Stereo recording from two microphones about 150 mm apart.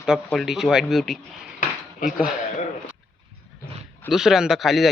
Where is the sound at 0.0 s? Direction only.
Centre (ahead or behind).